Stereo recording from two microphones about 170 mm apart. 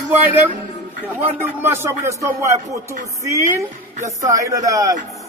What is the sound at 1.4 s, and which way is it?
Speech, 15° right (ahead or behind).